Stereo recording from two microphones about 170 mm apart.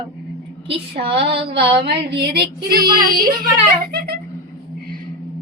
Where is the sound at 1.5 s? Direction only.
85° right.